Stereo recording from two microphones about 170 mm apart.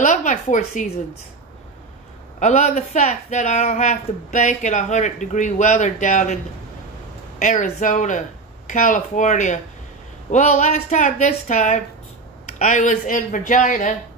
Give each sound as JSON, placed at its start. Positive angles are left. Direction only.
{"t": 0.0, "sound": "speech", "side_deg": 45}
{"t": 2.4, "sound": "speech", "side_deg": 40}